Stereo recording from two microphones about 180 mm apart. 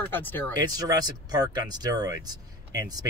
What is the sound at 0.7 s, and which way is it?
Speech, 20° right (ahead or behind).